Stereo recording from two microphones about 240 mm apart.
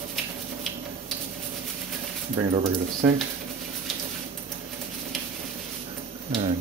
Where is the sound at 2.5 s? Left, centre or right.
Right.